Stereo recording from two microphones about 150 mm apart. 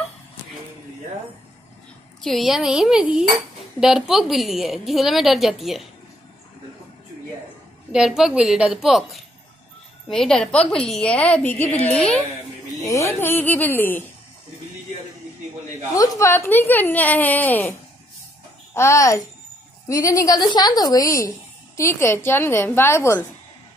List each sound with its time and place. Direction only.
2.2 s a woman's voice: centre (ahead or behind)
7.9 s a woman's voice: 5° right (ahead or behind)
12.8 s speech: 20° left (ahead or behind)
15.9 s speech: 20° left (ahead or behind)
18.8 s a woman's voice: 20° left (ahead or behind)